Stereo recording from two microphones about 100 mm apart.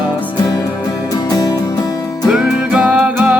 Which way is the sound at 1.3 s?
40° left (ahead or behind).